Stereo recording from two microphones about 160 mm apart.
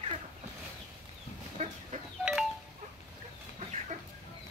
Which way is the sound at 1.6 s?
45° right (ahead or behind).